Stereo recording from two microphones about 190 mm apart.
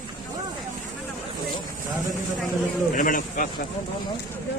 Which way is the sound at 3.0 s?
45° left (ahead or behind).